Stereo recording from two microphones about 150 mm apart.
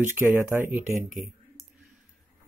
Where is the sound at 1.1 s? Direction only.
Centre (ahead or behind).